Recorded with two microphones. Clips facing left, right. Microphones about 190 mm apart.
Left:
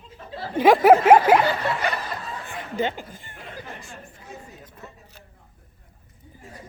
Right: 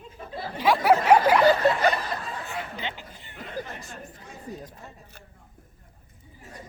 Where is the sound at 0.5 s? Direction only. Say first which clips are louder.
Left 7 dB; 50° left (ahead or behind).